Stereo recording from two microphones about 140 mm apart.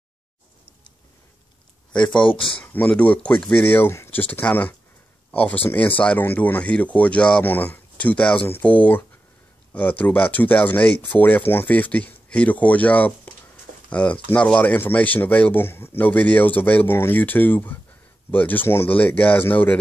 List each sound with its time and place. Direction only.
2.2 s speech: 40° left (ahead or behind)
2.6 s speech: 10° left (ahead or behind)